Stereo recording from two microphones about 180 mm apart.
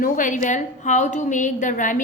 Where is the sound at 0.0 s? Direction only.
45° left (ahead or behind).